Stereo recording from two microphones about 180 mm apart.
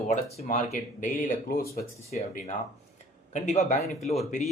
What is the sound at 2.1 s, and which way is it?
Speech, 35° left (ahead or behind).